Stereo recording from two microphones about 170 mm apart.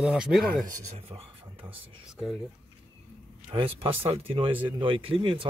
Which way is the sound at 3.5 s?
30° right (ahead or behind).